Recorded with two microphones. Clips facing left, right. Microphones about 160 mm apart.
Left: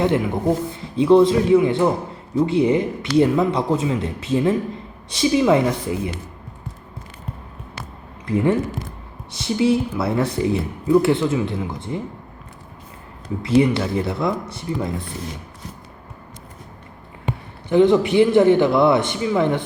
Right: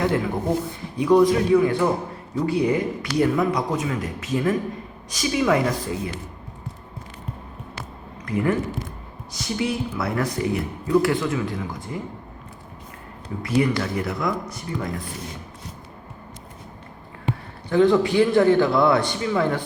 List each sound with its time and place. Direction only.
0.0 s a man's voice: 20° left (ahead or behind)
8.2 s speech: 25° left (ahead or behind)
13.4 s speech: 25° left (ahead or behind)
17.7 s speech: 20° left (ahead or behind)